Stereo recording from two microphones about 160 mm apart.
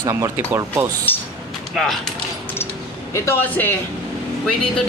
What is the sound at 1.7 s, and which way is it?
Speech, centre (ahead or behind).